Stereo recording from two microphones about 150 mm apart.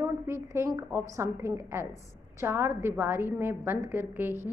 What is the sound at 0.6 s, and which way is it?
A woman's voice, 20° right (ahead or behind).